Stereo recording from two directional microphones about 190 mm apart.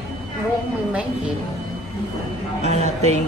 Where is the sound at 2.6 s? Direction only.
35° right (ahead or behind).